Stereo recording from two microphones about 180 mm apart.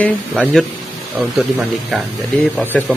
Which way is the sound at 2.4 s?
10° left (ahead or behind).